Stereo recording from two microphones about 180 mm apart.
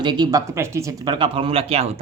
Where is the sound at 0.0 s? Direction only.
25° right (ahead or behind).